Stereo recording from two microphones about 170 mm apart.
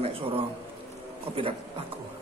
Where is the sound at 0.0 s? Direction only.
35° right (ahead or behind).